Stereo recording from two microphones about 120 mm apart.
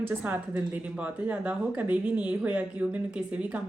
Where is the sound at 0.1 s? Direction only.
15° right (ahead or behind).